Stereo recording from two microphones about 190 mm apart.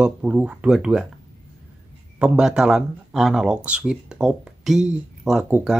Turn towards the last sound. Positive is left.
turn(degrees=-5)  # may be behind; listen again after turning